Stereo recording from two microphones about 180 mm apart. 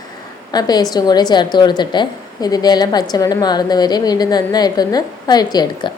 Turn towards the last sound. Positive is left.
turn(degrees=20)  # may be behind; listen again after turning